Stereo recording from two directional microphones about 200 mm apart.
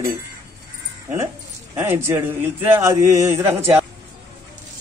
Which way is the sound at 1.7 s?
10° right (ahead or behind).